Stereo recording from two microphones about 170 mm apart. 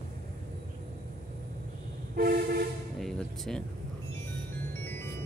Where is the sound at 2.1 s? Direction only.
60° right (ahead or behind).